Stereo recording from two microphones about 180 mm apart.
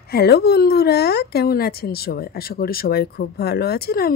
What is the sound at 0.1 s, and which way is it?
Speech, 65° left (ahead or behind).